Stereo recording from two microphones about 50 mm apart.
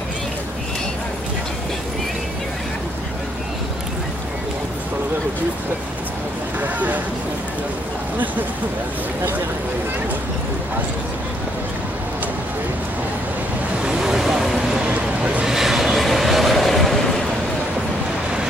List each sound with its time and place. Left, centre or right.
6.6 s vehicle: right
13.8 s vehicle: centre
14.9 s a sound: right
15.4 s vehicle: centre